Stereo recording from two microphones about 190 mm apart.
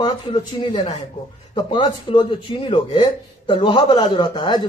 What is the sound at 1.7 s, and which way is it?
A man's voice, 25° left (ahead or behind).